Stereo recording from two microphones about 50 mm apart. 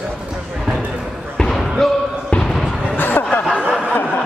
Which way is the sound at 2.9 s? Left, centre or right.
Left.